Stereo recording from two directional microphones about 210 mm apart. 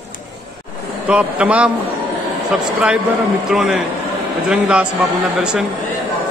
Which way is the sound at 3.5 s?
Centre (ahead or behind).